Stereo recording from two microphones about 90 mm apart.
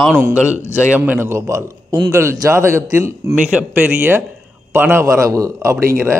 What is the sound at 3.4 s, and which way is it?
A man's voice, 15° right (ahead or behind).